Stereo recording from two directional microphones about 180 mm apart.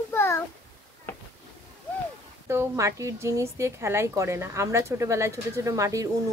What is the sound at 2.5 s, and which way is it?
A woman's voice, 15° right (ahead or behind).